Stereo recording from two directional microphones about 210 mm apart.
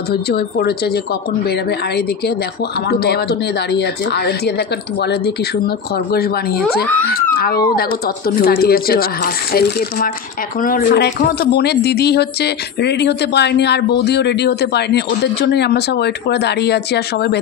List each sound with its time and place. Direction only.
0.3 s speech: 45° left (ahead or behind)
2.9 s speech: 50° left (ahead or behind)
7.3 s speech: 45° left (ahead or behind)